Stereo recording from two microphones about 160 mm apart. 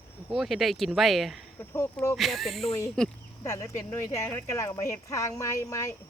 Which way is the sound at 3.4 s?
15° left (ahead or behind).